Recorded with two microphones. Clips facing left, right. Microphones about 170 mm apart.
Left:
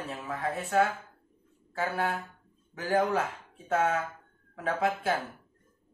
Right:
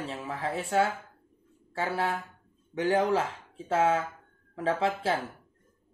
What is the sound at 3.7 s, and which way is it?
Speech, 30° right (ahead or behind).